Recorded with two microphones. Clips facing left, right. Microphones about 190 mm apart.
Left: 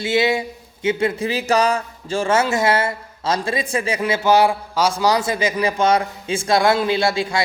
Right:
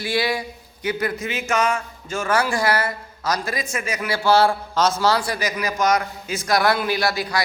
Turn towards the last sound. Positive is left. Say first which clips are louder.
# left 3 dB
turn(degrees=25)  # may be behind; listen again after turning